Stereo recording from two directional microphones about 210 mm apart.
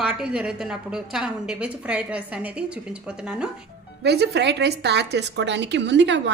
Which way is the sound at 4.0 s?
55° right (ahead or behind).